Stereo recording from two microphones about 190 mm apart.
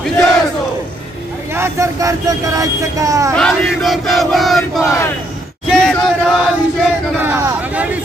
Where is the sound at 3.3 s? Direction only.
5° left (ahead or behind).